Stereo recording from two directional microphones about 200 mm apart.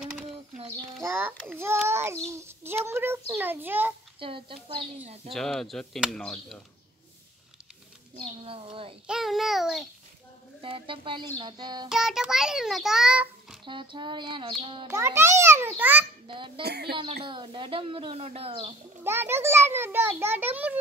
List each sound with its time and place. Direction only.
1.0 s a child's voice: 10° right (ahead or behind)
4.2 s speech: 25° right (ahead or behind)
5.3 s a child's voice: centre (ahead or behind)
8.2 s speech: 30° right (ahead or behind)
9.0 s a child's voice: centre (ahead or behind)
10.6 s speech: 25° right (ahead or behind)
11.9 s a child's voice: centre (ahead or behind)
13.7 s speech: 25° right (ahead or behind)
14.9 s a child's voice: 15° right (ahead or behind)
16.3 s speech: 25° right (ahead or behind)
16.6 s speech: 55° right (ahead or behind)
16.9 s speech: 25° right (ahead or behind)
19.0 s a child's voice: 10° right (ahead or behind)